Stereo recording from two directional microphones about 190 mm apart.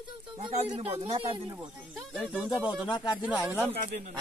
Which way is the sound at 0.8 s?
30° right (ahead or behind).